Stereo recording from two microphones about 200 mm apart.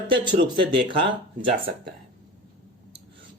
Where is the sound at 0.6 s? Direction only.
25° right (ahead or behind).